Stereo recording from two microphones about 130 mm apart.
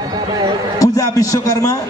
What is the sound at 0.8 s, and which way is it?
A man's voice, 25° left (ahead or behind).